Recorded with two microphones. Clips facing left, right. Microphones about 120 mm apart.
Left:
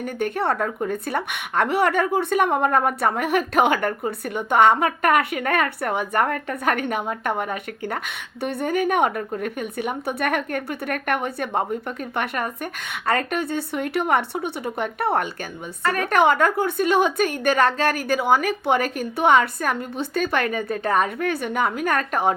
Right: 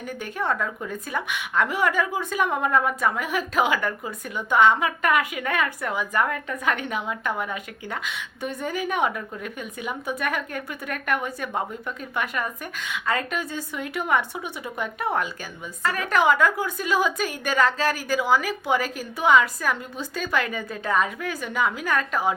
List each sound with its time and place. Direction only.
0.0 s a woman's voice: 60° left (ahead or behind)
0.5 s speech: 40° left (ahead or behind)
0.9 s a woman's voice: 60° left (ahead or behind)
2.6 s a woman's voice: 45° left (ahead or behind)
3.2 s a woman's voice: 60° left (ahead or behind)
4.7 s a woman's voice: 45° left (ahead or behind)
7.5 s a woman's voice: 60° left (ahead or behind)
13.1 s a woman's voice: 60° left (ahead or behind)